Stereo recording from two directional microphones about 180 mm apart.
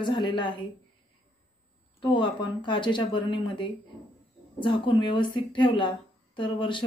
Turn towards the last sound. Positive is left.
turn(degrees=30)  # may be behind; listen again after turning